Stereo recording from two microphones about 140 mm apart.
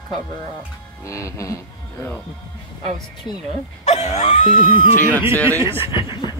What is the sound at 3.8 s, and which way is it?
Wail, 55° left (ahead or behind).